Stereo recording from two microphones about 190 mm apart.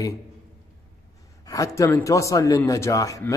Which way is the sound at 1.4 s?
20° left (ahead or behind).